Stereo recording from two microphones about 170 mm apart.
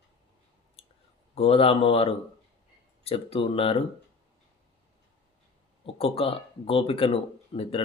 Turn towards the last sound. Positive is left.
turn(degrees=35)  # may be behind; listen again after turning